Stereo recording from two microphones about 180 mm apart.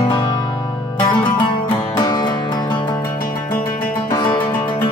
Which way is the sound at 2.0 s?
20° left (ahead or behind).